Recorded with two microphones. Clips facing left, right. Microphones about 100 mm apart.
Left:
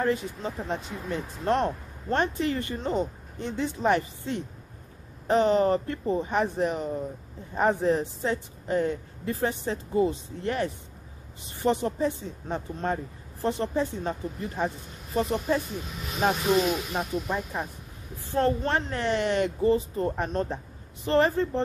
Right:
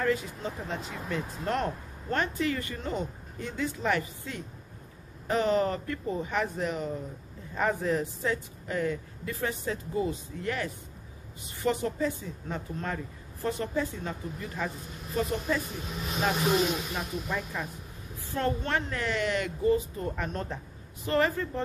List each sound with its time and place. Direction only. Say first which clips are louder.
0.0 s a woman's voice: left 2 dB; 25° left (ahead or behind)
16.9 s a woman's voice: left 4 dB; 30° left (ahead or behind)